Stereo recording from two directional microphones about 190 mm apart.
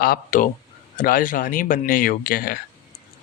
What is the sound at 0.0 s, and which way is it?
A man's voice, 45° left (ahead or behind).